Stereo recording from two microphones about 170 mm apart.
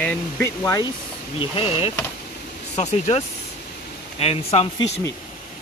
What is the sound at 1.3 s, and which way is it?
Speech, 35° left (ahead or behind).